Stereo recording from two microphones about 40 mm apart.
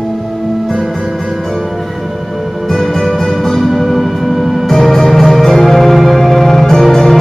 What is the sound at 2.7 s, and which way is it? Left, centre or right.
Music, centre.